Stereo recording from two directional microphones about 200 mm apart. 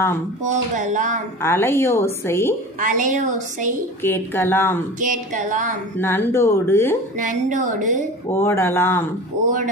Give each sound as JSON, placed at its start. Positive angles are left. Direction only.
{"t": 0.4, "sound": "a woman's voice", "side_deg": -40}
{"t": 1.4, "sound": "a woman's voice", "side_deg": 10}
{"t": 2.8, "sound": "a woman's voice", "side_deg": -40}
{"t": 4.0, "sound": "a woman's voice", "side_deg": 10}
{"t": 5.0, "sound": "a woman's voice", "side_deg": -40}
{"t": 5.9, "sound": "a woman's voice", "side_deg": 10}
{"t": 7.2, "sound": "a woman's voice", "side_deg": -40}
{"t": 8.3, "sound": "a woman's voice", "side_deg": 10}